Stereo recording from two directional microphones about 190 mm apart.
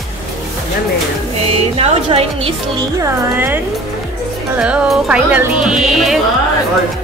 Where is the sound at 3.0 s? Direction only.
15° right (ahead or behind).